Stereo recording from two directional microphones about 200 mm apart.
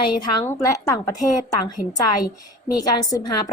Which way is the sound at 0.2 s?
15° left (ahead or behind).